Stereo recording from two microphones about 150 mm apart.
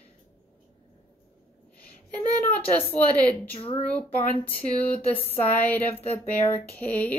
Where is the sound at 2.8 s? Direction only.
10° left (ahead or behind).